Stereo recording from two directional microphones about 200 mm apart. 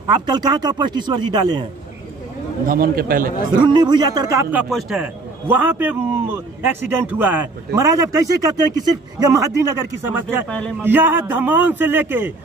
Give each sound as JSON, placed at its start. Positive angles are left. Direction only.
{"t": 0.0, "sound": "speech", "side_deg": -20}
{"t": 2.6, "sound": "a man's voice", "side_deg": -45}
{"t": 3.6, "sound": "a man's voice", "side_deg": -20}